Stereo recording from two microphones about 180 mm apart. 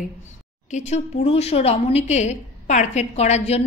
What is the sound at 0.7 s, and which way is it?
A woman's voice, 40° left (ahead or behind).